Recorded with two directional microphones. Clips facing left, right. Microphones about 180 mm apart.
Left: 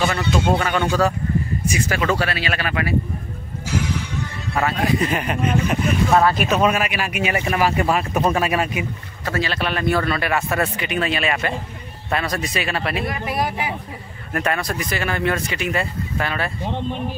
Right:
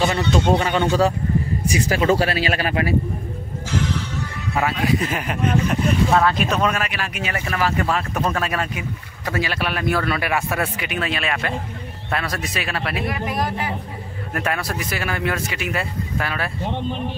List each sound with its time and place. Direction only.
0.2 s speech: 5° left (ahead or behind)
0.6 s speech: 25° right (ahead or behind)
3.7 s music: 10° left (ahead or behind)
4.6 s speech: 5° right (ahead or behind); by 8.8 s 10° left (ahead or behind)
9.2 s speech: 10° right (ahead or behind)
13.2 s speech: 10° left (ahead or behind)
14.3 s speech: 5° right (ahead or behind)